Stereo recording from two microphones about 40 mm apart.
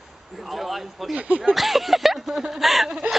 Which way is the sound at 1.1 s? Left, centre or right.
Right.